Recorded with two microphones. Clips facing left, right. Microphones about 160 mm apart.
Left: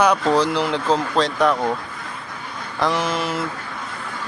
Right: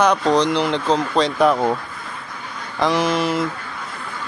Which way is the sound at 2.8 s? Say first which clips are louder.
Right 3 dB; centre (ahead or behind).